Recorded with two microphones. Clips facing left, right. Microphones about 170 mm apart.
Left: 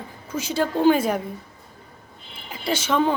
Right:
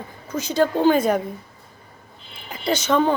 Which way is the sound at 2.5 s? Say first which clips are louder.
Right 3 dB; 5° left (ahead or behind).